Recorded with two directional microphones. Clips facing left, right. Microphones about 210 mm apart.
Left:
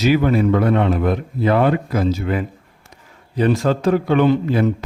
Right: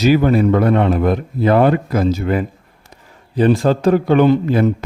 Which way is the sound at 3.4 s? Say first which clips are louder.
Right 3 dB; 30° right (ahead or behind).